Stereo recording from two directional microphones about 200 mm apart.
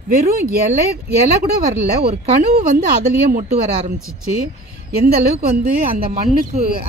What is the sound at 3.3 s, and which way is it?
Speech, 30° right (ahead or behind).